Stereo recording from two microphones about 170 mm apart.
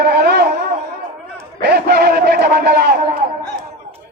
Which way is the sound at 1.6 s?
75° right (ahead or behind).